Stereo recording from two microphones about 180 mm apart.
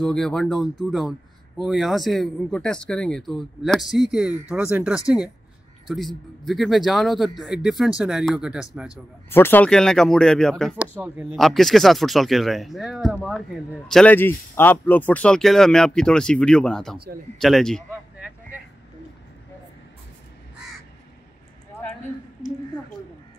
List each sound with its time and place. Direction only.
0.0 s speech: 5° left (ahead or behind)
8.9 s speech: 15° left (ahead or behind)